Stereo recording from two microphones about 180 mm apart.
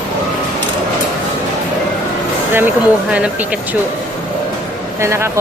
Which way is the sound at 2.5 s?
10° right (ahead or behind).